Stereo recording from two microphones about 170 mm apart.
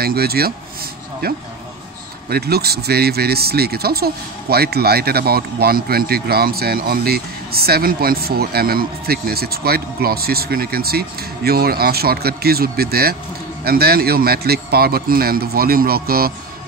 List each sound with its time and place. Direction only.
0.0 s speech: 65° right (ahead or behind)